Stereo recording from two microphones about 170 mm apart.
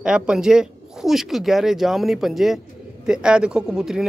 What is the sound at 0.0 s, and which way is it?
Speech, 5° right (ahead or behind).